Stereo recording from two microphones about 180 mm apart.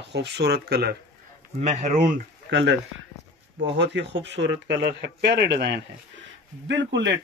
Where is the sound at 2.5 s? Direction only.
75° right (ahead or behind).